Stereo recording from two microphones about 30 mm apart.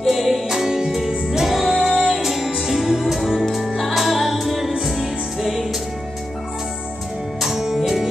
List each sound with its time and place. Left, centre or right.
0.0 s music: centre
0.7 s music: centre
7.4 s music: centre